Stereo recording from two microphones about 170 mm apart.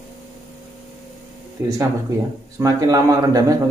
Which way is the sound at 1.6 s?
15° right (ahead or behind).